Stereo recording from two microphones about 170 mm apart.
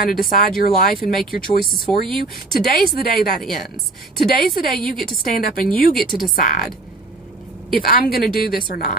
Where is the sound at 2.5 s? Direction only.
60° left (ahead or behind).